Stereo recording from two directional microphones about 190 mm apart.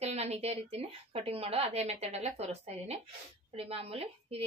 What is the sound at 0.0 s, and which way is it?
A woman's voice, 35° right (ahead or behind).